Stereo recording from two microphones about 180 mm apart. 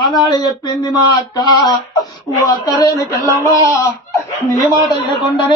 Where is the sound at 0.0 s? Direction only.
25° left (ahead or behind).